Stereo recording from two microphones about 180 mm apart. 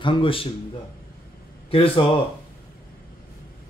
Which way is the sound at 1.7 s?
30° left (ahead or behind).